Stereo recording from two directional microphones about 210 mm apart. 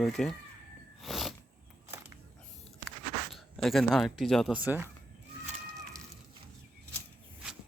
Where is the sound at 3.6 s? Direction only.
Centre (ahead or behind).